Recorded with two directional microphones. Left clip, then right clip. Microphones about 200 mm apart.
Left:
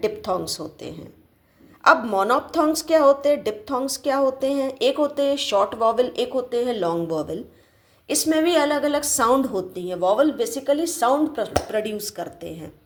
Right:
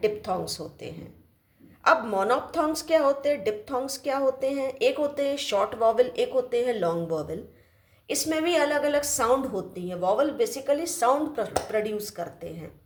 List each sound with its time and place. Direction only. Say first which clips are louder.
0.0 s a woman's voice: left 3 dB; 20° left (ahead or behind)